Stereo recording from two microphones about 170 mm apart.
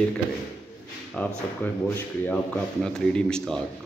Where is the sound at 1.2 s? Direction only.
10° left (ahead or behind).